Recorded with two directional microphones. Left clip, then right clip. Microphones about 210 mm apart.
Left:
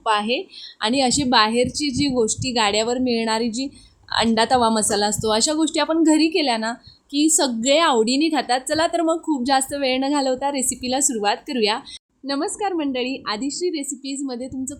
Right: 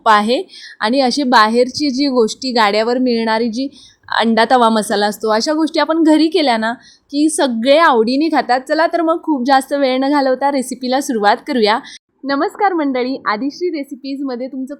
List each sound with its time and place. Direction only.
0.0 s a woman's voice: 25° right (ahead or behind)
13.5 s a woman's voice: 10° left (ahead or behind)